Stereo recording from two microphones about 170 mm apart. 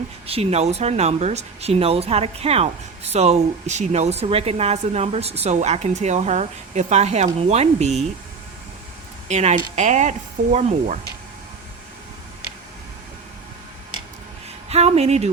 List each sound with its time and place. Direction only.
0.3 s speech: 35° right (ahead or behind)
9.3 s speech: 40° right (ahead or behind)
14.7 s speech: 40° right (ahead or behind)